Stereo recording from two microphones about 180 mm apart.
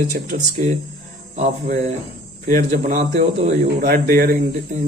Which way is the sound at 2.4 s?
45° right (ahead or behind).